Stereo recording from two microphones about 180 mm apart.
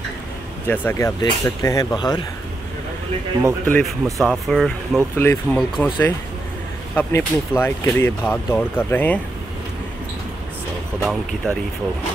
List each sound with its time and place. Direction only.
0.7 s speech: 15° left (ahead or behind)
3.6 s speech: 5° left (ahead or behind)
11.0 s speech: 5° left (ahead or behind)